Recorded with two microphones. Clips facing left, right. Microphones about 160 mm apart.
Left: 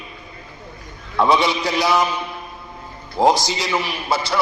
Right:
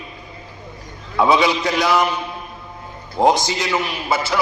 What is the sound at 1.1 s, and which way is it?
Speech, 5° right (ahead or behind).